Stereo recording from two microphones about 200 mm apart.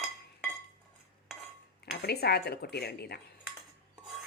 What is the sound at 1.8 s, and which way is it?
Speech, 55° left (ahead or behind).